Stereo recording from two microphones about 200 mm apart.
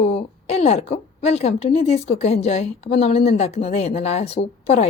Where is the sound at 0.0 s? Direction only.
30° left (ahead or behind).